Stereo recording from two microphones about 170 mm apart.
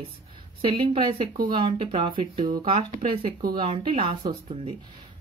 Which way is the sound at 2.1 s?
55° right (ahead or behind).